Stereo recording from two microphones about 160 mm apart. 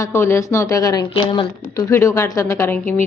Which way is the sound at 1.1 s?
30° left (ahead or behind).